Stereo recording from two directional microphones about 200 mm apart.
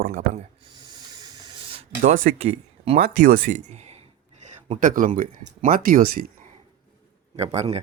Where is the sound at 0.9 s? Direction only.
20° right (ahead or behind).